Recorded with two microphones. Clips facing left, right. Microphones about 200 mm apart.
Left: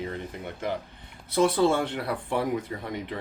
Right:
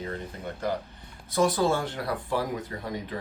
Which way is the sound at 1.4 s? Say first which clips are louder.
Left 2 dB; 65° left (ahead or behind).